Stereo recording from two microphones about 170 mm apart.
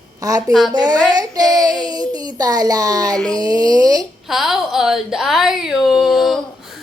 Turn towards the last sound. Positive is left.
turn(degrees=0)  # may be behind; listen again after turning